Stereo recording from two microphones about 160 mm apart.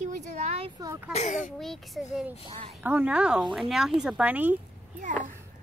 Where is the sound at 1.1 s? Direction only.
50° left (ahead or behind).